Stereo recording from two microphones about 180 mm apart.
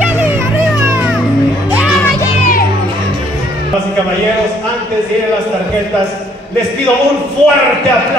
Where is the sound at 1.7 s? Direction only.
5° right (ahead or behind).